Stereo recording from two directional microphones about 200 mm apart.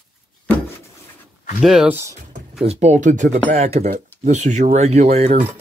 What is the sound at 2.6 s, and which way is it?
Speech, 30° right (ahead or behind).